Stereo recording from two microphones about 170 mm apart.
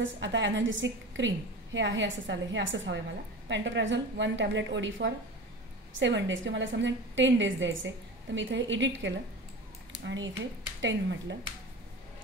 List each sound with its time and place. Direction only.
0.0 s a woman's voice: 90° right